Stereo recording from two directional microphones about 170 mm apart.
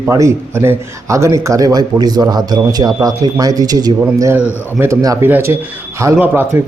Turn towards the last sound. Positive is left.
turn(degrees=-15)  # may be behind; listen again after turning